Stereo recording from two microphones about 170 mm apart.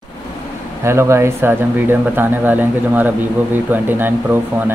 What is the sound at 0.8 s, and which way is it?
Speech, 15° right (ahead or behind).